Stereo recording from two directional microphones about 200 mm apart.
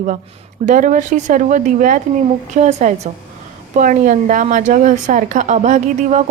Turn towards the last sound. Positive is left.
turn(degrees=-35)  # may be behind; listen again after turning